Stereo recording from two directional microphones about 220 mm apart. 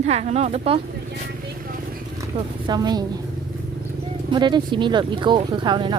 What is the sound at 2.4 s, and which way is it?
Speech, 20° right (ahead or behind).